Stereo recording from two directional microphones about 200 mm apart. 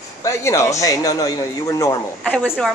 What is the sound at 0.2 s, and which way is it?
Speech, 15° left (ahead or behind).